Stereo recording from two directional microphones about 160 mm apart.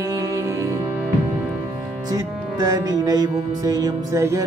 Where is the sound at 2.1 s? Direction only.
25° right (ahead or behind).